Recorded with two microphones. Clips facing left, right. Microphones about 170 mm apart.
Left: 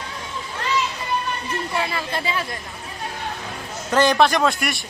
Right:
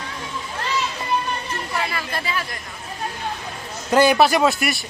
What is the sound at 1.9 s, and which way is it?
Speech, 20° left (ahead or behind).